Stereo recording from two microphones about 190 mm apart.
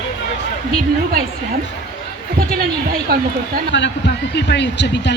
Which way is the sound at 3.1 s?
50° right (ahead or behind).